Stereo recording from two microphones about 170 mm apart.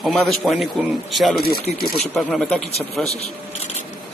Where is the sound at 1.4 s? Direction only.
65° left (ahead or behind).